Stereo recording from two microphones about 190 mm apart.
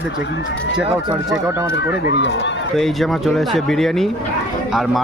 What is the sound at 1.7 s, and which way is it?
Speech, 65° left (ahead or behind).